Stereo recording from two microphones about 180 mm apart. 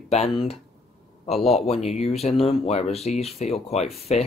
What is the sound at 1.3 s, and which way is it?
Speech, centre (ahead or behind).